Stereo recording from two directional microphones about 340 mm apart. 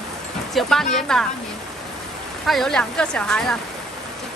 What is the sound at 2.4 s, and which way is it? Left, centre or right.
Speech, centre.